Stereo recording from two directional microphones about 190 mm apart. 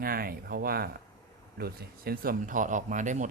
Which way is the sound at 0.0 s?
50° right (ahead or behind).